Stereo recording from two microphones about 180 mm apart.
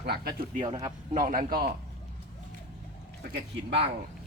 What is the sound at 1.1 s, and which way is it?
Speech, 50° right (ahead or behind).